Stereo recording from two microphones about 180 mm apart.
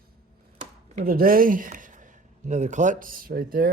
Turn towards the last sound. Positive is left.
turn(degrees=-55)  # may be behind; listen again after turning